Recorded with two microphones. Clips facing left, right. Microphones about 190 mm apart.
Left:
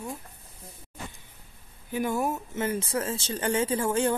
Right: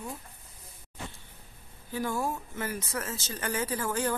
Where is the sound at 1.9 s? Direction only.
20° left (ahead or behind).